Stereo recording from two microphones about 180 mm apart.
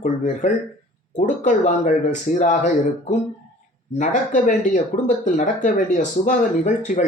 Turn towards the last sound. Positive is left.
turn(degrees=45)  # may be behind; listen again after turning